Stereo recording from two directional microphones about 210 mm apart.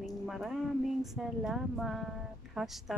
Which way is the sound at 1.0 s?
Centre (ahead or behind).